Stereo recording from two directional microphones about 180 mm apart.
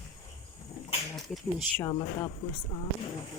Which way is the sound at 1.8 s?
25° left (ahead or behind).